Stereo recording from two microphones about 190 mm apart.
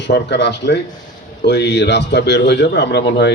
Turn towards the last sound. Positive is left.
turn(degrees=65)  # may be behind; listen again after turning